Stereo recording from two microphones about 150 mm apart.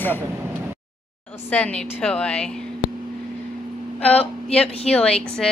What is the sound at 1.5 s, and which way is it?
A woman's voice, 10° left (ahead or behind).